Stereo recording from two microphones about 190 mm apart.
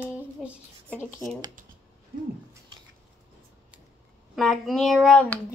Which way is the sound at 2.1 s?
55° right (ahead or behind).